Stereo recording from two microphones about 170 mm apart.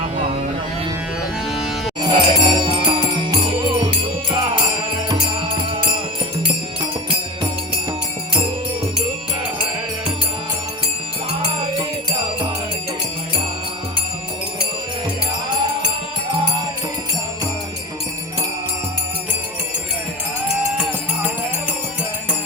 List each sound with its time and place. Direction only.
1.5 s music: centre (ahead or behind)
2.0 s music: 25° right (ahead or behind)